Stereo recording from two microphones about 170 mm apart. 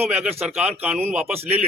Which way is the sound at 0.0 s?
10° right (ahead or behind).